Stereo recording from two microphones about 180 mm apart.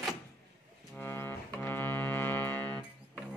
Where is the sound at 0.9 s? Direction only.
10° left (ahead or behind).